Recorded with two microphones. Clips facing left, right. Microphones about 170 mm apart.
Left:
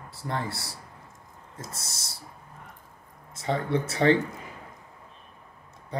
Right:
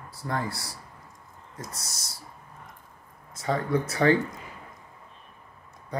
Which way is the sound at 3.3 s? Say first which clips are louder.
Right 1 dB; 25° left (ahead or behind).